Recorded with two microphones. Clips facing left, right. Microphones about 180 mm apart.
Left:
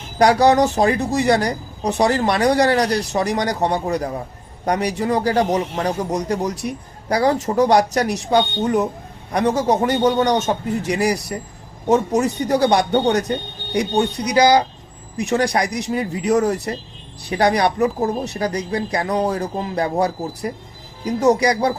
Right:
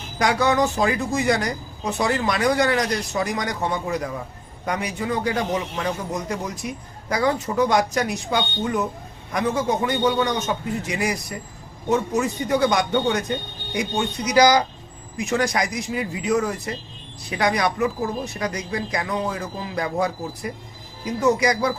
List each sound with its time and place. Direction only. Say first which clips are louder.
0.2 s a woman's voice: left 6 dB; 35° left (ahead or behind)
15.6 s a woman's voice: left 4 dB; 40° left (ahead or behind)
19.7 s a woman's voice: left 3 dB; 30° left (ahead or behind)